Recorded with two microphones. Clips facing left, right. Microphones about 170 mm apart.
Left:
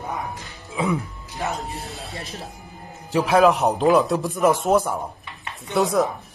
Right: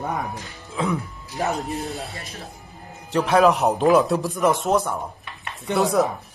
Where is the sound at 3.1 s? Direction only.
Centre (ahead or behind).